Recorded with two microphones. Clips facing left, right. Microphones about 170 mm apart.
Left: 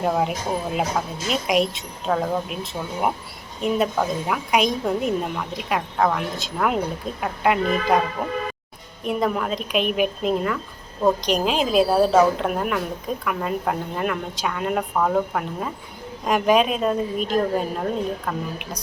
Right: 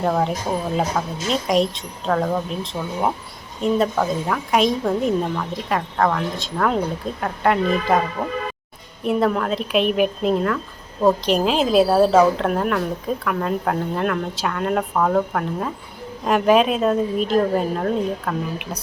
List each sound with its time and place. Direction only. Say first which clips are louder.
0.0 s a woman's voice: right 2 dB; 5° left (ahead or behind)
9.0 s a woman's voice: right 3 dB; centre (ahead or behind)